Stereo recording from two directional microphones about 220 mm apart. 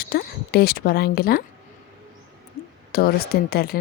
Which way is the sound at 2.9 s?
45° left (ahead or behind).